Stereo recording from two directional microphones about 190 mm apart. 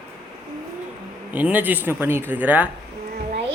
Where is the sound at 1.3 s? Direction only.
10° right (ahead or behind).